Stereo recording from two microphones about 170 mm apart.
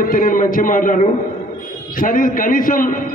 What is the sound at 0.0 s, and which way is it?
A man's voice, 55° left (ahead or behind).